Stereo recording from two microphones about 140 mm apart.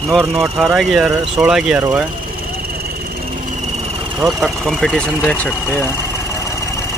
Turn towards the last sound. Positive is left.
turn(degrees=10)  # may be behind; listen again after turning